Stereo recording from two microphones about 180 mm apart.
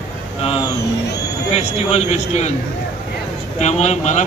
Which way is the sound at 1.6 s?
40° left (ahead or behind).